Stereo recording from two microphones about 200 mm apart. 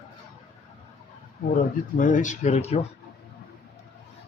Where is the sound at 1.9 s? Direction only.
40° left (ahead or behind).